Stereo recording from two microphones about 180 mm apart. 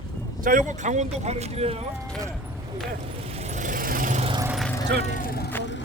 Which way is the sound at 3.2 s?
35° right (ahead or behind).